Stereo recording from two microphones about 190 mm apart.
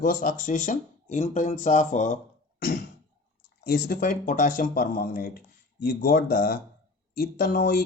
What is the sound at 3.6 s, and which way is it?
Speech, 50° left (ahead or behind).